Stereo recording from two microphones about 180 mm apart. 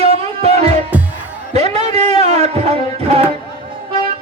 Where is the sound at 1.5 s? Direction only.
35° right (ahead or behind).